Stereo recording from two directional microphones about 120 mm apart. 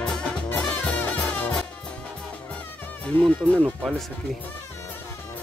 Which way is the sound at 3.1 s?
20° left (ahead or behind).